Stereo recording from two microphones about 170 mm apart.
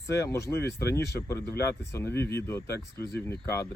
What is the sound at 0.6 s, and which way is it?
Speech, 75° left (ahead or behind).